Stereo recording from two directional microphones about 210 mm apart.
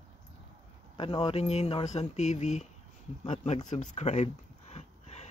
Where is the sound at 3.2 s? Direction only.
30° left (ahead or behind).